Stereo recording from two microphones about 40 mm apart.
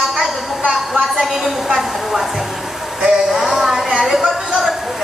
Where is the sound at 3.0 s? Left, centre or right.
Centre.